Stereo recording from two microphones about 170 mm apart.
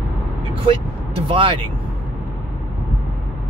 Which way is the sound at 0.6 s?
30° right (ahead or behind).